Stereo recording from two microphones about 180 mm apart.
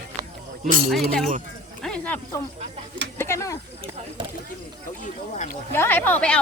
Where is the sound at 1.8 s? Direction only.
5° left (ahead or behind).